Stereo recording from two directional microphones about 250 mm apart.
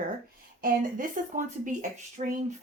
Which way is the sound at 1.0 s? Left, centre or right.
Right.